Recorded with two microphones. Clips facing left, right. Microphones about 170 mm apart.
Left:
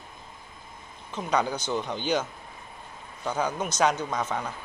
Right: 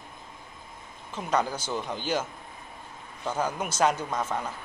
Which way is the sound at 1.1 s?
Centre (ahead or behind).